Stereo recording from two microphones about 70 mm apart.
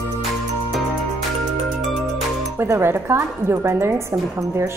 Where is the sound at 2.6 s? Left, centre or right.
Right.